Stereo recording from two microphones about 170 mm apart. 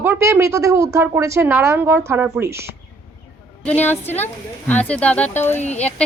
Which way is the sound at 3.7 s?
10° left (ahead or behind).